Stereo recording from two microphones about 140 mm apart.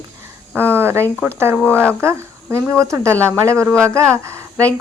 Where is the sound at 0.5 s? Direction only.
15° right (ahead or behind).